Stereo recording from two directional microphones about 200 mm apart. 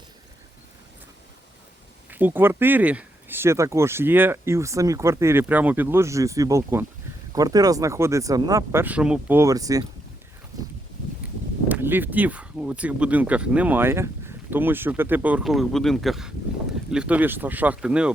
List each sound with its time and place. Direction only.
2.0 s speech: 10° right (ahead or behind)
11.7 s speech: 10° right (ahead or behind)